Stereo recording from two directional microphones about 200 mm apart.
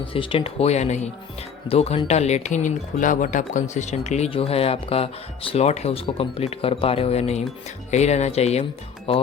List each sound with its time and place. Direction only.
0.0 s speech: 25° left (ahead or behind)